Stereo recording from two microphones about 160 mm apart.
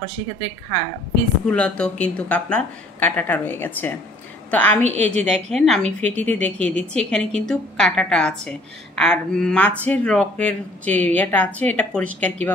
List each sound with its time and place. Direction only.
1.5 s speech: 5° left (ahead or behind)
4.8 s a woman's voice: 45° right (ahead or behind)
5.3 s speech: centre (ahead or behind)